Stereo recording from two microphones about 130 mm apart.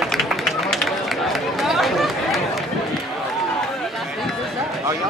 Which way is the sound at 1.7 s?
Centre (ahead or behind).